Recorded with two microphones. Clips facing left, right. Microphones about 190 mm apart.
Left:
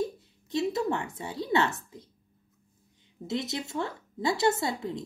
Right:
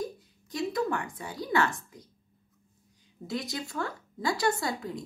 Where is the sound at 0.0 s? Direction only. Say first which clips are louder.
Left 4 dB; 25° left (ahead or behind).